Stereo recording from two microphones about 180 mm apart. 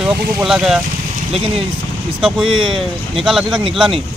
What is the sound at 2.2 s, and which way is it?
Speech, centre (ahead or behind).